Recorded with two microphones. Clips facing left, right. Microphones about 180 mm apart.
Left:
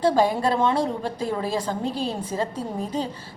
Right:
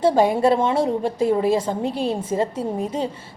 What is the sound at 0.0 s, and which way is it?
A woman's voice, 25° right (ahead or behind).